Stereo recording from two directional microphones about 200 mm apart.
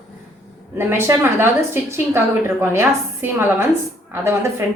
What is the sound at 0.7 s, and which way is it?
A woman's voice, 10° right (ahead or behind).